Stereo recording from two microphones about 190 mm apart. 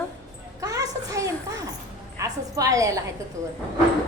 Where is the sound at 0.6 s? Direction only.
20° right (ahead or behind).